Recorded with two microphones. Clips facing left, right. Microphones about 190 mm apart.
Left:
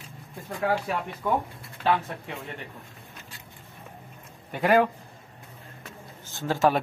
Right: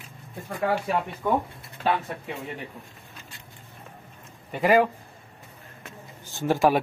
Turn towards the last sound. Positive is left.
turn(degrees=-10)  # may be behind; listen again after turning